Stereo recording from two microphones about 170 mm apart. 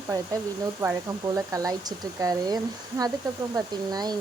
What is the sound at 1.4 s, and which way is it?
Speech, 20° right (ahead or behind).